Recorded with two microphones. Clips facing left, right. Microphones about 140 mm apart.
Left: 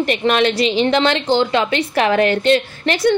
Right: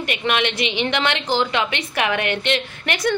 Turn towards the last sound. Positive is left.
turn(degrees=30)  # may be behind; listen again after turning